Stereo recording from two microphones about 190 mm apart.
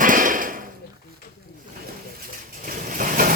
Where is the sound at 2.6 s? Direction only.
45° right (ahead or behind).